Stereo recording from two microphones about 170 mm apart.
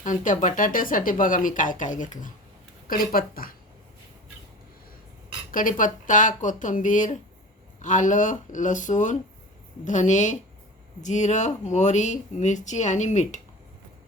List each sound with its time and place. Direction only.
0.0 s a woman's voice: 50° left (ahead or behind)
5.5 s speech: 55° left (ahead or behind)